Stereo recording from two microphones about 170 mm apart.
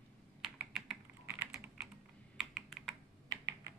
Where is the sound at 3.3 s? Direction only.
20° right (ahead or behind).